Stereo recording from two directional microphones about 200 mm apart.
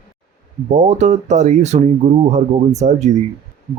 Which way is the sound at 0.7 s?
35° right (ahead or behind).